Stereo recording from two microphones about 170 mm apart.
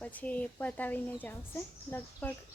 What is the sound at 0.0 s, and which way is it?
Speech, 10° left (ahead or behind).